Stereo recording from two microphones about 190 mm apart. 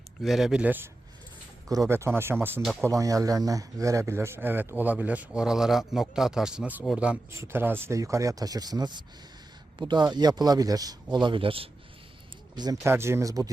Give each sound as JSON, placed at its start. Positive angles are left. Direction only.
{"t": 0.2, "sound": "speech", "side_deg": 0}
{"t": 12.5, "sound": "speech", "side_deg": -15}